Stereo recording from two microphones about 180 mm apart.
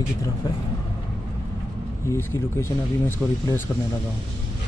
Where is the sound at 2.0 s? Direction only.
15° left (ahead or behind).